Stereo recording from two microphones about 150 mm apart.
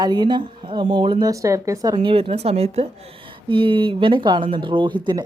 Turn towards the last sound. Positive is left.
turn(degrees=-30)  # may be behind; listen again after turning